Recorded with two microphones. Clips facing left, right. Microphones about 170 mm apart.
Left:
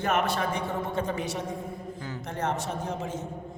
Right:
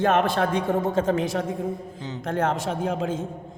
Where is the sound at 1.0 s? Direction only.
90° right.